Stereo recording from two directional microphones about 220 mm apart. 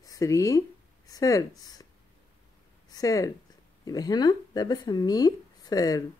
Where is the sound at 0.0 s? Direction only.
15° left (ahead or behind).